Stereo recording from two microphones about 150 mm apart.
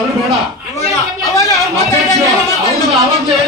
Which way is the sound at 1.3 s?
25° left (ahead or behind).